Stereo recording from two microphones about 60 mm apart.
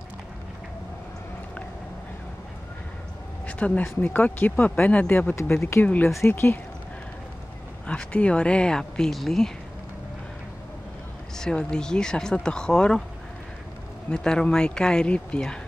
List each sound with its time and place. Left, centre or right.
3.4 s speech: left
5.6 s speech: left
7.8 s speech: centre
11.3 s speech: centre
14.1 s speech: centre